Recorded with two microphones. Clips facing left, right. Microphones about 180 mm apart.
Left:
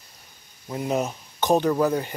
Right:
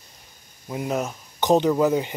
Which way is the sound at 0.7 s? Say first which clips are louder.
Left 1 dB; centre (ahead or behind).